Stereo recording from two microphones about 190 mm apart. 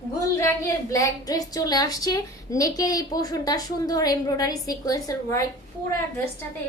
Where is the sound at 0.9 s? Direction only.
15° left (ahead or behind).